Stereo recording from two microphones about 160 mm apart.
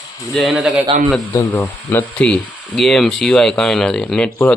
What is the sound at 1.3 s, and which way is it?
Speech, 15° left (ahead or behind).